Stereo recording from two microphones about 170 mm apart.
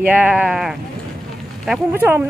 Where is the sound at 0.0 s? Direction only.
10° right (ahead or behind).